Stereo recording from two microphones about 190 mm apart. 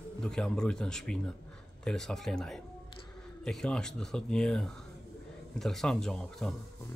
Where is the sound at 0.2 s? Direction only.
5° left (ahead or behind).